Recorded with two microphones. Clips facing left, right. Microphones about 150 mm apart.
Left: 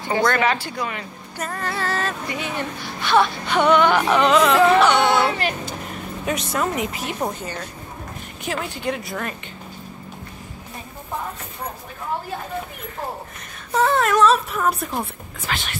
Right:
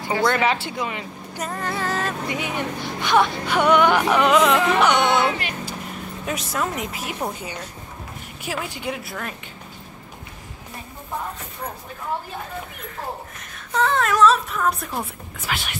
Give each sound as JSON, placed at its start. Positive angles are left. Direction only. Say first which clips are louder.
{"t": 0.3, "sound": "a woman's voice", "louder": "even", "side_deg": -20}
{"t": 6.2, "sound": "speech", "louder": "left 3 dB", "side_deg": 0}
{"t": 8.5, "sound": "a woman's voice", "louder": "left 3 dB", "side_deg": -10}
{"t": 13.7, "sound": "speech", "louder": "left 2 dB", "side_deg": 5}